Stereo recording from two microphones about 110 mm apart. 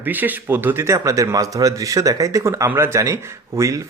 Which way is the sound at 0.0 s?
15° right (ahead or behind).